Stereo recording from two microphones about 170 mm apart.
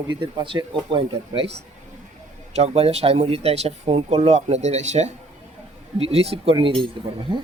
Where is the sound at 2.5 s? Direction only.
35° right (ahead or behind).